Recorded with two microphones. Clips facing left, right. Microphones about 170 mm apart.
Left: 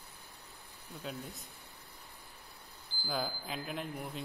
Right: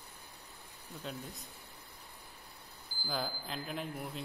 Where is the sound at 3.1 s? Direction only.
Centre (ahead or behind).